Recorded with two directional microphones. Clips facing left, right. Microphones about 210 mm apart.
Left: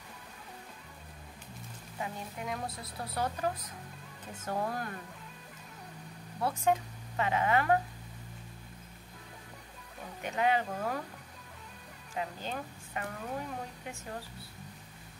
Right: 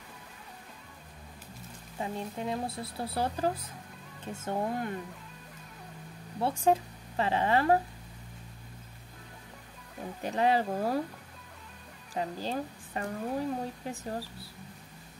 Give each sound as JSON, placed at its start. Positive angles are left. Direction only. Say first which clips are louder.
{"t": 2.0, "sound": "speech", "louder": "right 5 dB", "side_deg": -30}
{"t": 6.4, "sound": "speech", "louder": "right 3 dB", "side_deg": -30}
{"t": 10.2, "sound": "a woman's voice", "louder": "right 3 dB", "side_deg": -35}
{"t": 12.1, "sound": "a woman's voice", "louder": "right 4 dB", "side_deg": -35}